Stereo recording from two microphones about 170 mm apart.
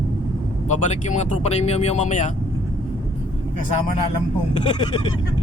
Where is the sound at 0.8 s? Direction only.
45° left (ahead or behind).